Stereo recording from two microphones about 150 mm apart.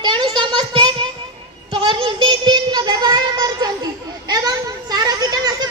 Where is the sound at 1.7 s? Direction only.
35° right (ahead or behind).